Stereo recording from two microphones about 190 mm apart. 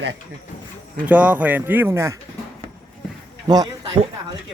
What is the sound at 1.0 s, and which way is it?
Speech, 10° right (ahead or behind).